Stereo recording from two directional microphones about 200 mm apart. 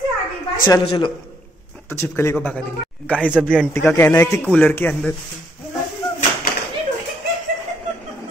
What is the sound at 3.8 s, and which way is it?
Speech, 10° left (ahead or behind).